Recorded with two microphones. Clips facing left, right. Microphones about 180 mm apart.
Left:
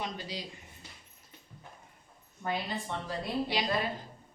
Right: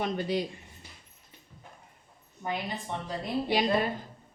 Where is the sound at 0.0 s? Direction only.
55° right (ahead or behind).